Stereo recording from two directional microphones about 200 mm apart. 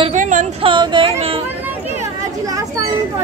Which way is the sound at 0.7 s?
25° right (ahead or behind).